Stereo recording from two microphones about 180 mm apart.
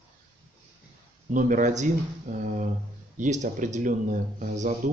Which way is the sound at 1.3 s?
45° right (ahead or behind).